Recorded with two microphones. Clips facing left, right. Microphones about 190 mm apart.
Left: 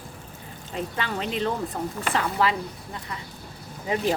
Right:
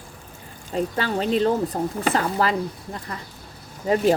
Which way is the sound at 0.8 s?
40° right (ahead or behind).